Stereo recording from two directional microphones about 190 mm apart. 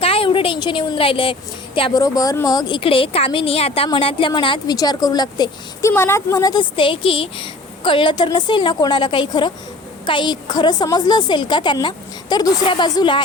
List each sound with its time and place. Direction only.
0.0 s a woman's voice: 30° left (ahead or behind)